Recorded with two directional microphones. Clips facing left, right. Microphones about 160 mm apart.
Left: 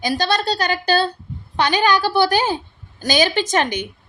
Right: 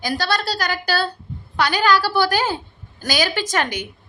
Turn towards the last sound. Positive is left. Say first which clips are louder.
# left 3 dB
turn(degrees=25)  # may be behind; listen again after turning